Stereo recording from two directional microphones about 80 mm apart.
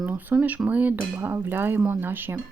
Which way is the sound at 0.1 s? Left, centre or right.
Right.